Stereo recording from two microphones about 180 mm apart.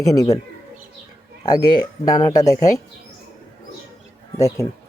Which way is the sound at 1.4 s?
20° left (ahead or behind).